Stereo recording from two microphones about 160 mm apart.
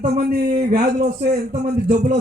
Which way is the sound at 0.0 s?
80° right.